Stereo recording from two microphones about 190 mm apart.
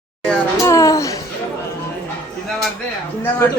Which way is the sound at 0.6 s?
15° left (ahead or behind).